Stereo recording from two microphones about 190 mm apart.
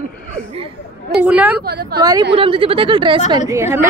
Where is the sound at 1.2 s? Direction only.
10° right (ahead or behind).